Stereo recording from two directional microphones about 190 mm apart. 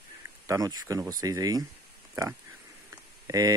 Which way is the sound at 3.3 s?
15° right (ahead or behind).